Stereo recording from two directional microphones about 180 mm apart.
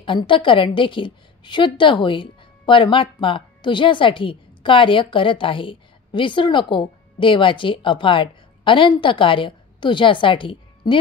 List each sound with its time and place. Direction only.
0.0 s a woman's voice: 25° left (ahead or behind)